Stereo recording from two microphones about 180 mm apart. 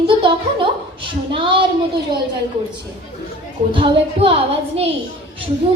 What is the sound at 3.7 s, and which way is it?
A woman's voice, 30° right (ahead or behind).